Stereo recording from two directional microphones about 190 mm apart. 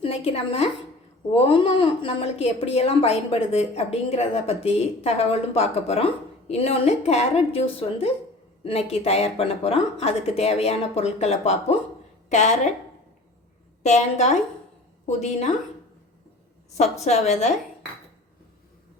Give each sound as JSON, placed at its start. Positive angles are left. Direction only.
{"t": 0.0, "sound": "a woman's voice", "side_deg": 30}
{"t": 13.8, "sound": "speech", "side_deg": 35}
{"t": 17.0, "sound": "speech", "side_deg": 35}